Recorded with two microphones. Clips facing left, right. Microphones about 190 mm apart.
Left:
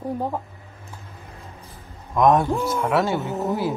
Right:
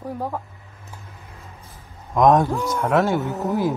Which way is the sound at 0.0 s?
20° left (ahead or behind).